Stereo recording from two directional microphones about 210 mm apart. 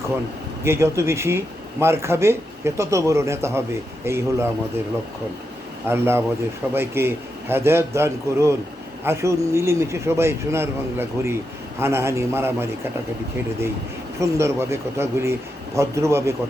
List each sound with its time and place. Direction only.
0.6 s a man's voice: 10° right (ahead or behind)
5.9 s a man's voice: 10° right (ahead or behind)
14.2 s a man's voice: 15° right (ahead or behind)